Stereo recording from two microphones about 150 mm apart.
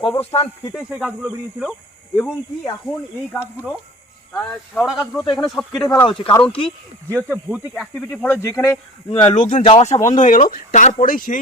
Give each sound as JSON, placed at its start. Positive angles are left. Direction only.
{"t": 0.0, "sound": "speech", "side_deg": 40}
{"t": 0.9, "sound": "speech", "side_deg": -10}
{"t": 4.4, "sound": "speech", "side_deg": 5}
{"t": 6.1, "sound": "speech", "side_deg": 35}
{"t": 7.1, "sound": "speech", "side_deg": -15}
{"t": 7.7, "sound": "speech", "side_deg": 5}
{"t": 9.0, "sound": "speech", "side_deg": 35}
{"t": 9.3, "sound": "speech", "side_deg": 55}
{"t": 9.6, "sound": "speech", "side_deg": 45}